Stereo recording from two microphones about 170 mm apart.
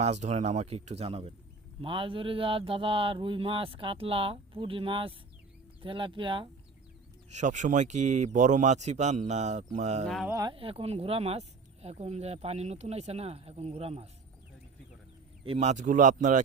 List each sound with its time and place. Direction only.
0.0 s speech: 40° right (ahead or behind)
7.3 s speech: 45° right (ahead or behind)
10.2 s speech: 20° right (ahead or behind)
10.5 s speech: 35° right (ahead or behind)
15.4 s speech: 45° right (ahead or behind)